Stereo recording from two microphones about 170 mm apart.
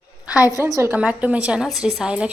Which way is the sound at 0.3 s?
20° left (ahead or behind).